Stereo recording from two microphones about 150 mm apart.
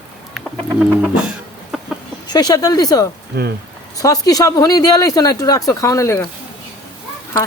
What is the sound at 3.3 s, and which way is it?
Speech, 90° right.